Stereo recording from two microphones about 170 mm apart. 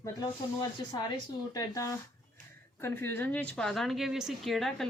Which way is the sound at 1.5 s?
20° left (ahead or behind).